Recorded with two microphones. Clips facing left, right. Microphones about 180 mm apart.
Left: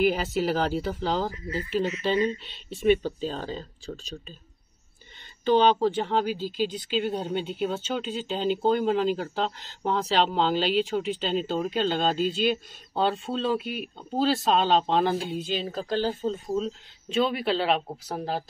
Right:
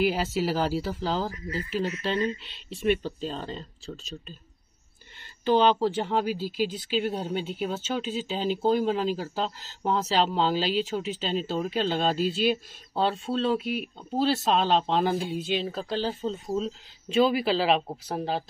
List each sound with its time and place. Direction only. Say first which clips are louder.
0.0 s speech: left 1 dB; 5° right (ahead or behind)
5.2 s speech: left 1 dB; 5° right (ahead or behind)